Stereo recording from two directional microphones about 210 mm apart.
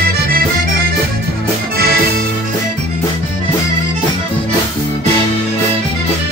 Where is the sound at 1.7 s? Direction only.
45° right (ahead or behind).